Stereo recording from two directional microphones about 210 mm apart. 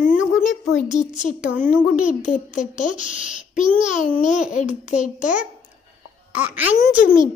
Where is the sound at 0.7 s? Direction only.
35° left (ahead or behind).